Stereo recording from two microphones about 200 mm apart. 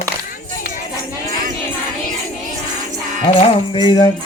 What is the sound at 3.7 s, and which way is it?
Speech, 25° left (ahead or behind).